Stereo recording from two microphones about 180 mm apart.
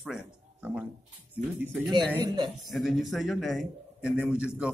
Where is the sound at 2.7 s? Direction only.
Centre (ahead or behind).